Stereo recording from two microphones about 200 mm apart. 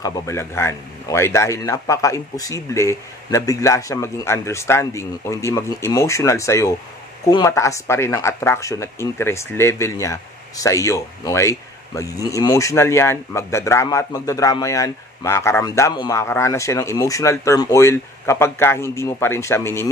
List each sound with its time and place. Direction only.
0.0 s speech: 15° left (ahead or behind)